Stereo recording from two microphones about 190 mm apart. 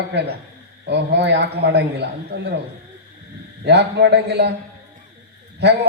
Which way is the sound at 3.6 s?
60° right (ahead or behind).